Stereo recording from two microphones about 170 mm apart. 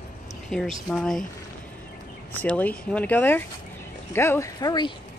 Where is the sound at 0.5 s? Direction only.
5° left (ahead or behind).